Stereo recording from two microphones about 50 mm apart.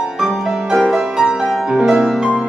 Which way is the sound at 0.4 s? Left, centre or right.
Centre.